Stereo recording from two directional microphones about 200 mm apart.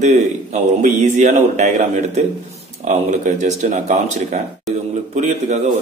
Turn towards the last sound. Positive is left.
turn(degrees=-35)  # may be behind; listen again after turning